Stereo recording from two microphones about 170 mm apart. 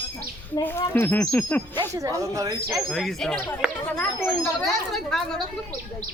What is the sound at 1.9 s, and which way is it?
Speech, 20° right (ahead or behind).